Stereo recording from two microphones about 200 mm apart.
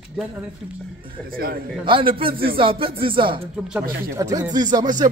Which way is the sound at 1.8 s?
25° right (ahead or behind).